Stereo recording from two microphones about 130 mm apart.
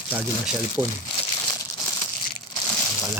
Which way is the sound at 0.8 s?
25° right (ahead or behind).